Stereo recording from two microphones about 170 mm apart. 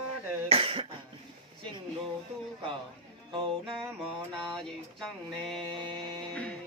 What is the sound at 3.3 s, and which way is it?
Music, 25° right (ahead or behind).